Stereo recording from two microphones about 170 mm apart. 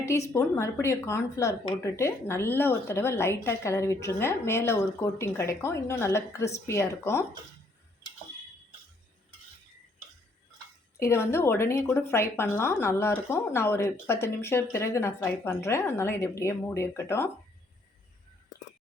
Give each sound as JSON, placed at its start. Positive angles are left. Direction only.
{"t": 0.1, "sound": "a woman's voice", "side_deg": 15}
{"t": 11.0, "sound": "a woman's voice", "side_deg": 15}